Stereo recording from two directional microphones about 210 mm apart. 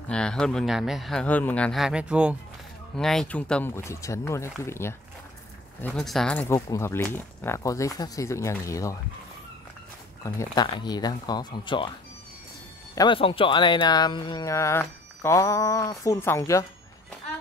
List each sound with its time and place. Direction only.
0.1 s speech: 5° left (ahead or behind)
6.4 s speech: 15° left (ahead or behind)
10.2 s speech: 20° left (ahead or behind)
12.9 s speech: 20° left (ahead or behind)